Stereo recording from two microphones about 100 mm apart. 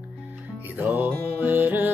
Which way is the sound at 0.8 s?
15° right (ahead or behind).